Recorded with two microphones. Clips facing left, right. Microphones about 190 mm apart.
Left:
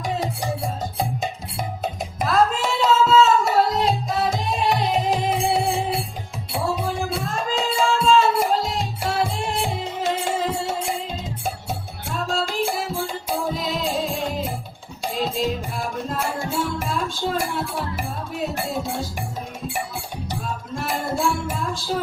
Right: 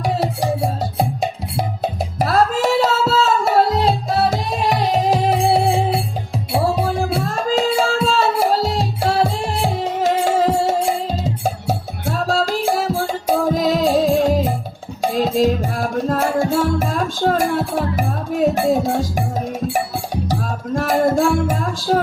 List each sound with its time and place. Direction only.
2.2 s music: 40° right (ahead or behind)
6.7 s music: 35° right (ahead or behind)
12.2 s music: 40° right (ahead or behind)
20.9 s music: 55° right (ahead or behind)